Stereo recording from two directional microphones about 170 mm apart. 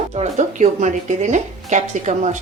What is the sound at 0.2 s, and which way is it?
A woman's voice, 45° right (ahead or behind).